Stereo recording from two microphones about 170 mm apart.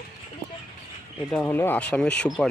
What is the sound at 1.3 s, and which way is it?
Speech, 10° left (ahead or behind).